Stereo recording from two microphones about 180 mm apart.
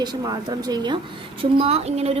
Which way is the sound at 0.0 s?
25° right (ahead or behind).